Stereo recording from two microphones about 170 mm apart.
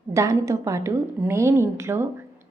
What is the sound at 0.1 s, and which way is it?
A woman's voice, 20° right (ahead or behind).